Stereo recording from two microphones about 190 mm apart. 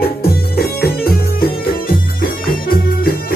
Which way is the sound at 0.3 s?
55° left (ahead or behind).